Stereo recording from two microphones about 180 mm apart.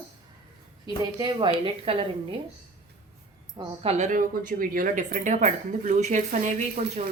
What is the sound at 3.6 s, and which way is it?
Speech, 35° right (ahead or behind).